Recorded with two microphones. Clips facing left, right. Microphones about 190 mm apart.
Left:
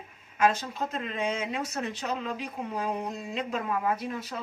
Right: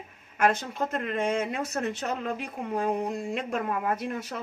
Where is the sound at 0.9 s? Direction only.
55° right (ahead or behind).